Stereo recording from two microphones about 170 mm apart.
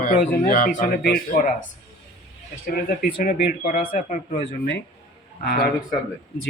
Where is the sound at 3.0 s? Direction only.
60° left (ahead or behind).